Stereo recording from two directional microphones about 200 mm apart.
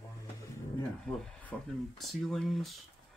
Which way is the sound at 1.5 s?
5° left (ahead or behind).